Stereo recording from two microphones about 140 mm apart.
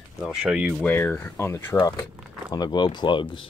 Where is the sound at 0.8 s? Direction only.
10° left (ahead or behind); by 3.5 s 35° left (ahead or behind).